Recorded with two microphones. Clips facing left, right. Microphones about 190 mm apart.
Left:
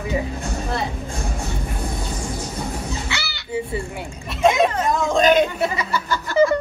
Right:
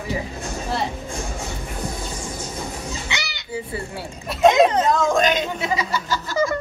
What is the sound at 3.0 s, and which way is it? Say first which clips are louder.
Music: left 1 dB; 20° right (ahead or behind).